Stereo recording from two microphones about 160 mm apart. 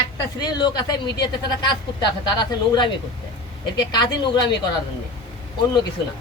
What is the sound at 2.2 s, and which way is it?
Speech, 25° left (ahead or behind).